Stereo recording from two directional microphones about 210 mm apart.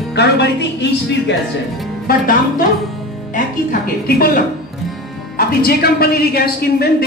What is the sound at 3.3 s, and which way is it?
A woman's voice, 40° left (ahead or behind).